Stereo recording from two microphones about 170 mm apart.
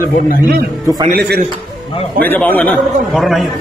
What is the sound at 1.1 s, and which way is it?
Speech, 65° right (ahead or behind).